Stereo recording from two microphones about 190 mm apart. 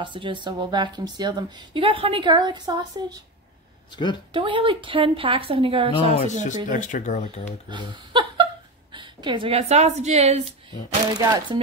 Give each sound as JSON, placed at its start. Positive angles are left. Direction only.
{"t": 0.0, "sound": "a woman's voice", "side_deg": -25}
{"t": 3.9, "sound": "a woman's voice", "side_deg": 25}
{"t": 4.3, "sound": "a woman's voice", "side_deg": -25}
{"t": 6.1, "sound": "speech", "side_deg": 40}
{"t": 7.7, "sound": "a woman's voice", "side_deg": -25}
{"t": 11.1, "sound": "a woman's voice", "side_deg": -20}